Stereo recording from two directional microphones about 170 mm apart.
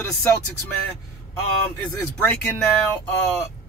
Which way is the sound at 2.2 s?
10° left (ahead or behind).